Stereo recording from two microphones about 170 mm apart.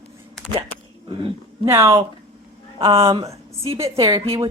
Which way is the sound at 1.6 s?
15° right (ahead or behind).